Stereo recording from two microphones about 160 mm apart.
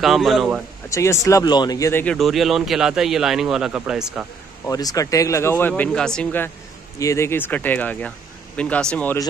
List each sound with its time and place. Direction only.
0.0 s speech: centre (ahead or behind)
0.8 s speech: 20° left (ahead or behind)
2.1 s speech: centre (ahead or behind)
4.6 s speech: 20° left (ahead or behind)